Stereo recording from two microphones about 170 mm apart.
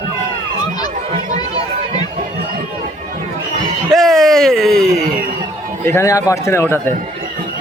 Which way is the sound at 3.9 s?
Centre (ahead or behind).